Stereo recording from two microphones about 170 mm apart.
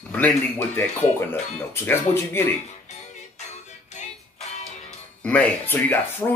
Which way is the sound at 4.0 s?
40° left (ahead or behind).